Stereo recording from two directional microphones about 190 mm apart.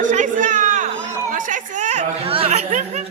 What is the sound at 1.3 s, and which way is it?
Chatter, 45° right (ahead or behind).